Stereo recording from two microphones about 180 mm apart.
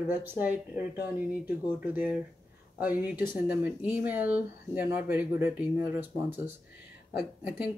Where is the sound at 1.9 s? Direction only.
10° right (ahead or behind).